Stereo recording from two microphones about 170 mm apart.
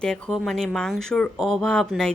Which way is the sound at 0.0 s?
5° left (ahead or behind).